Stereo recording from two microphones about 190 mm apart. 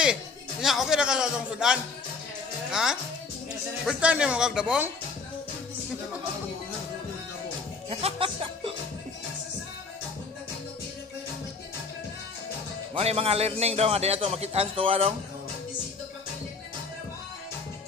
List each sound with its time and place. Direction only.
0.0 s a man's voice: 5° right (ahead or behind)
7.9 s music: 30° right (ahead or behind)
12.9 s a man's voice: 30° right (ahead or behind)